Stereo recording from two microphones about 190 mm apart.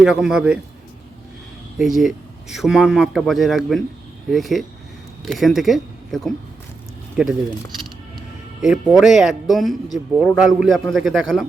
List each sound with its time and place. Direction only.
0.0 s a man's voice: 5° right (ahead or behind)
1.8 s a man's voice: centre (ahead or behind)
8.6 s a man's voice: centre (ahead or behind)